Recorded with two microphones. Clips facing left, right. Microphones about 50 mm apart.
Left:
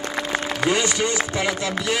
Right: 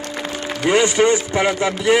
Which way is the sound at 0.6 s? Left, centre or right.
Right.